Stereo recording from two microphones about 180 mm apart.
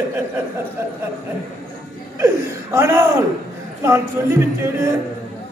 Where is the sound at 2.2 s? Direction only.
15° right (ahead or behind).